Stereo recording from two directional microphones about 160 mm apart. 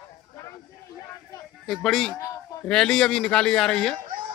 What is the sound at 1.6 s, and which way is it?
Speech, centre (ahead or behind).